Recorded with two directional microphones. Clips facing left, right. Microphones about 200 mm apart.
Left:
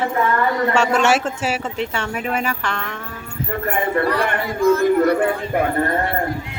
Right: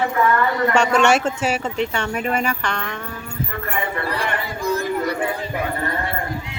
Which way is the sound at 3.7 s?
50° left (ahead or behind).